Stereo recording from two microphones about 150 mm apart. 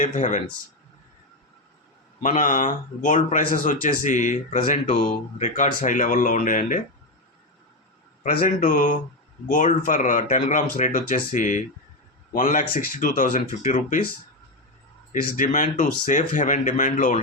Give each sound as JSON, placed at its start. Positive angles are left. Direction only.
{"t": 0.0, "sound": "speech", "side_deg": 55}
{"t": 2.2, "sound": "speech", "side_deg": 60}
{"t": 8.2, "sound": "speech", "side_deg": 65}
{"t": 15.1, "sound": "speech", "side_deg": 60}